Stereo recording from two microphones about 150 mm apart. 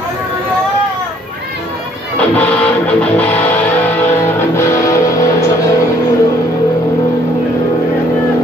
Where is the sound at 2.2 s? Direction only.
10° left (ahead or behind).